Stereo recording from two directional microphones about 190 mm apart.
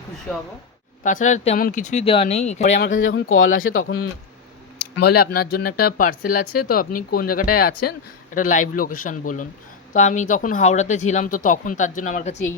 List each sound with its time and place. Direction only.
1.0 s speech: 40° left (ahead or behind)
2.6 s speech: 65° left (ahead or behind)
3.0 s speech: 90° left
5.0 s speech: 55° left (ahead or behind)